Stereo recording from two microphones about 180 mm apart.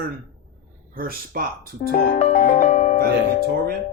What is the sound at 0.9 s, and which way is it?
Speech, 55° right (ahead or behind).